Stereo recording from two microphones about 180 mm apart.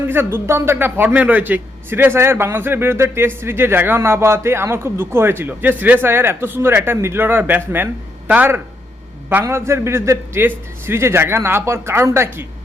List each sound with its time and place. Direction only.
0.1 s a man's voice: 15° right (ahead or behind)